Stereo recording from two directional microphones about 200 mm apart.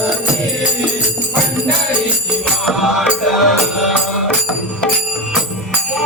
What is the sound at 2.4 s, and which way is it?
Music, centre (ahead or behind).